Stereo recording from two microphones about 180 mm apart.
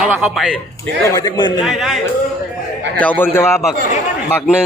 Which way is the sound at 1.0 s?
20° left (ahead or behind).